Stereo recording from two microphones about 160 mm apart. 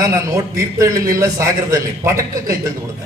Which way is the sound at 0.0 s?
20° right (ahead or behind).